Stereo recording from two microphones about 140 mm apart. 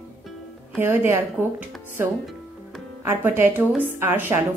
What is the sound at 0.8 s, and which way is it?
Speech, 15° right (ahead or behind).